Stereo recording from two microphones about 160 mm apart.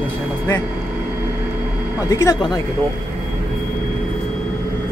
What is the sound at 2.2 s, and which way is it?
Speech, 20° left (ahead or behind).